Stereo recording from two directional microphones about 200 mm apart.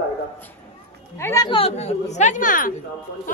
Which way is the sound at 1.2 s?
20° left (ahead or behind).